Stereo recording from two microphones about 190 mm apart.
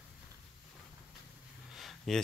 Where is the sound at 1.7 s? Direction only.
Centre (ahead or behind).